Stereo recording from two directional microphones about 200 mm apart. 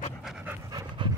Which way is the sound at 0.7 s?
20° right (ahead or behind).